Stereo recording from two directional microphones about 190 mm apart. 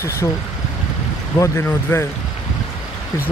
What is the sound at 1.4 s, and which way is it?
Speech, 15° left (ahead or behind).